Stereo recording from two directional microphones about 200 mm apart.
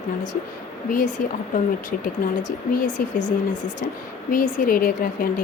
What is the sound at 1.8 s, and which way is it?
Speech, 40° left (ahead or behind).